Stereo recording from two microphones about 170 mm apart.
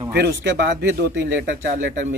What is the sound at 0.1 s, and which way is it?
Speech, 80° right.